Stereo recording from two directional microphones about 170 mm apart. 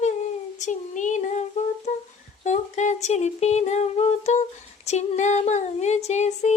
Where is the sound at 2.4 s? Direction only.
45° left (ahead or behind).